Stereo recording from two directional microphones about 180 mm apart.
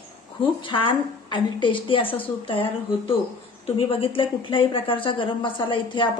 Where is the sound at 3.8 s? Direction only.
30° left (ahead or behind).